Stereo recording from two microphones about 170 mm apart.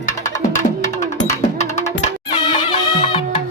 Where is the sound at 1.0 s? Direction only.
45° left (ahead or behind).